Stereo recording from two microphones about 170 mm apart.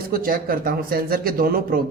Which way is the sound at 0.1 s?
60° right (ahead or behind).